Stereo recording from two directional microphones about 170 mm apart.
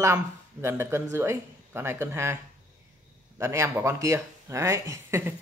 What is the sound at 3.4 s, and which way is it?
Speech, 15° right (ahead or behind).